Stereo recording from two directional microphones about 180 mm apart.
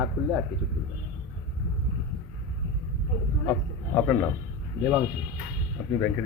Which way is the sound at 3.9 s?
10° left (ahead or behind).